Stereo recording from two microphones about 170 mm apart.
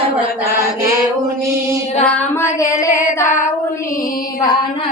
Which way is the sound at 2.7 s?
20° left (ahead or behind).